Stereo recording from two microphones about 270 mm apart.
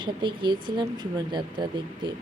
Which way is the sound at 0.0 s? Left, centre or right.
Centre.